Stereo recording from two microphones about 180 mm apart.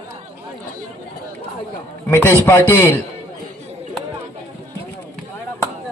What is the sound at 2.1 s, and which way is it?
Speech, 15° left (ahead or behind).